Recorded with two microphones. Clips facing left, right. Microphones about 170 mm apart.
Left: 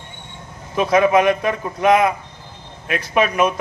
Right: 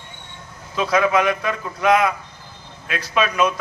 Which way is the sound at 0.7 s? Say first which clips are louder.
Left 4 dB; 20° left (ahead or behind).